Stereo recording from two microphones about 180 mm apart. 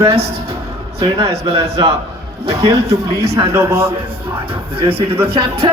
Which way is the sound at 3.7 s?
30° right (ahead or behind).